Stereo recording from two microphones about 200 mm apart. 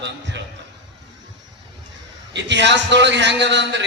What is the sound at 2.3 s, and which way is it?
A man's voice, 60° right (ahead or behind).